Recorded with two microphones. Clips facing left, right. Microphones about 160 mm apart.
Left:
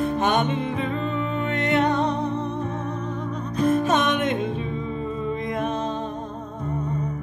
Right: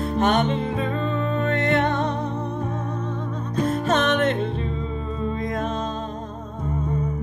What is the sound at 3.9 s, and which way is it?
Music, 15° left (ahead or behind).